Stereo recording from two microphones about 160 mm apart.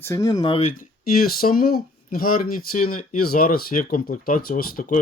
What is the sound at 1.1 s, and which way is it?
Speech, 65° left (ahead or behind).